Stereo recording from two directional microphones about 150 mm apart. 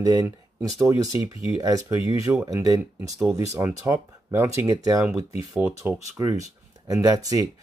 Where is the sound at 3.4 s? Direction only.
20° right (ahead or behind).